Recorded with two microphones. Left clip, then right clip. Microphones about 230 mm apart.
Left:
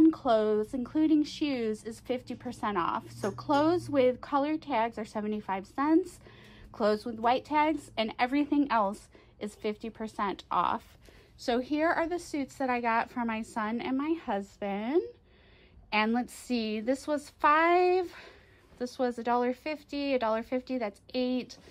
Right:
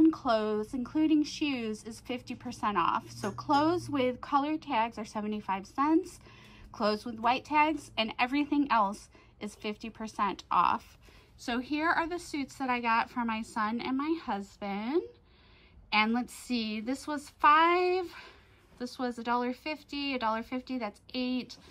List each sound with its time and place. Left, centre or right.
0.0 s a woman's voice: right
11.4 s speech: right